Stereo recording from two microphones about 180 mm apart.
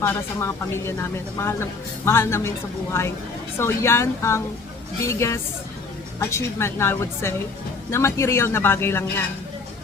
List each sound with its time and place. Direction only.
0.0 s speech: 15° left (ahead or behind)